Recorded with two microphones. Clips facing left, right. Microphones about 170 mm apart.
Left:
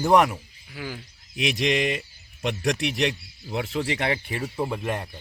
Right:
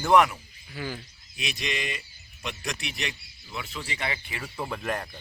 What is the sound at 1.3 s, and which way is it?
Speech, 80° left.